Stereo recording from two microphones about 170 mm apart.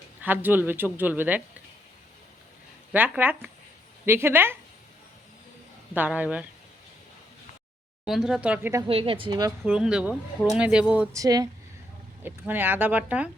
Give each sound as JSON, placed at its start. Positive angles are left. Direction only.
{"t": 0.2, "sound": "speech", "side_deg": -10}
{"t": 2.9, "sound": "speech", "side_deg": -10}
{"t": 5.9, "sound": "speech", "side_deg": -10}
{"t": 8.0, "sound": "speech", "side_deg": 0}
{"t": 8.9, "sound": "speech", "side_deg": -35}
{"t": 9.6, "sound": "speech", "side_deg": -5}
{"t": 11.1, "sound": "speech", "side_deg": -20}